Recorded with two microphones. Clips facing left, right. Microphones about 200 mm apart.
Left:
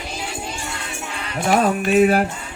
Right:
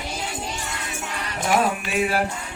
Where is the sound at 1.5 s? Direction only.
45° left (ahead or behind).